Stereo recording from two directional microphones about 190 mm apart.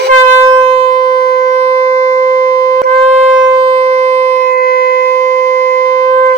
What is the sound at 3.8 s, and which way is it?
Siren, 35° right (ahead or behind).